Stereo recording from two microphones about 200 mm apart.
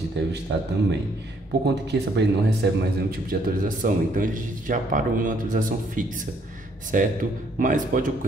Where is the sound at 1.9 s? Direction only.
55° right (ahead or behind).